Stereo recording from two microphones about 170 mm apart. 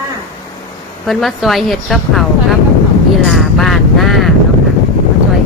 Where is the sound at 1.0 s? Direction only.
Centre (ahead or behind).